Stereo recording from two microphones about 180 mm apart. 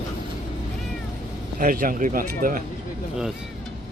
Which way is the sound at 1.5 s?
50° right (ahead or behind).